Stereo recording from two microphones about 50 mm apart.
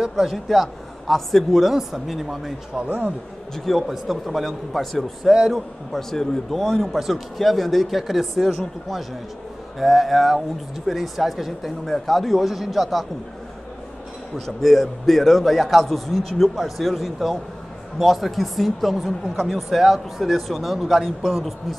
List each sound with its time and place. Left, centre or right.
0.1 s a man's voice: centre
2.7 s speech: right
3.5 s a man's voice: centre
5.3 s a man's voice: centre
5.9 s a man's voice: centre
6.6 s a man's voice: centre
14.4 s a man's voice: centre